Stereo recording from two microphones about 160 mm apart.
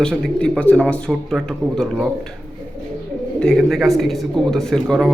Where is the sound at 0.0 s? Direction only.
5° left (ahead or behind).